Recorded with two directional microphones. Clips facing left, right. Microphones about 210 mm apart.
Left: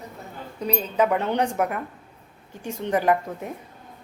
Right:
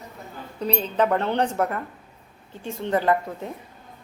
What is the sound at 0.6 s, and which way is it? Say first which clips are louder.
A woman's voice: even; 10° left (ahead or behind).